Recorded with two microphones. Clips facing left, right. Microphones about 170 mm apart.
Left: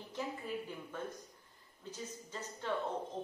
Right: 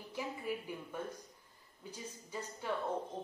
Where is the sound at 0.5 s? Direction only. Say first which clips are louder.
Right 1 dB; 10° right (ahead or behind).